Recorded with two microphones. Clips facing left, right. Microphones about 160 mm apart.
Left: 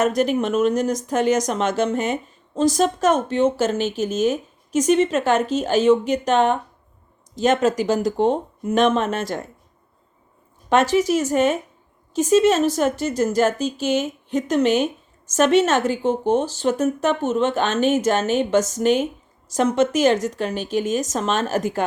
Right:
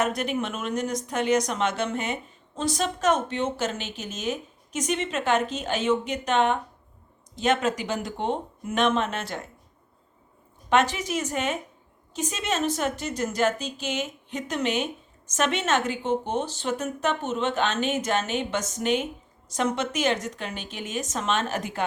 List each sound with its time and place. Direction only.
0.0 s speech: 40° left (ahead or behind)
10.9 s speech: 45° left (ahead or behind)